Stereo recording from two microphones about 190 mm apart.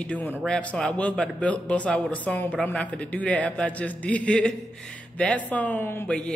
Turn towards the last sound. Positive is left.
turn(degrees=5)  # may be behind; listen again after turning